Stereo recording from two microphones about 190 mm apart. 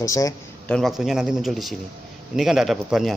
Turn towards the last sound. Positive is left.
turn(degrees=0)  # may be behind; listen again after turning